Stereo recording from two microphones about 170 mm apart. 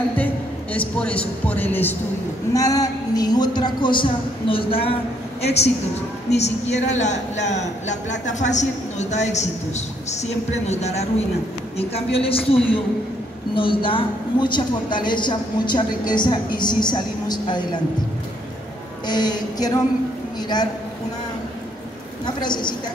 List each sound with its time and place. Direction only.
0.7 s a woman's voice: 5° left (ahead or behind); by 12.5 s 35° left (ahead or behind)
13.6 s a woman's voice: 30° left (ahead or behind)
19.0 s a woman's voice: 25° left (ahead or behind)
22.2 s a woman's voice: 25° left (ahead or behind)